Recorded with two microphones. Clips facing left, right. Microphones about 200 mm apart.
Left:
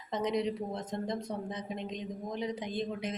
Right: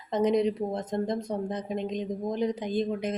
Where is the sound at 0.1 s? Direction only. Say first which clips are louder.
Right 7 dB; 50° right (ahead or behind).